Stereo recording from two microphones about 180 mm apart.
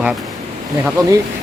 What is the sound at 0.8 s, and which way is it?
Speech, 15° right (ahead or behind).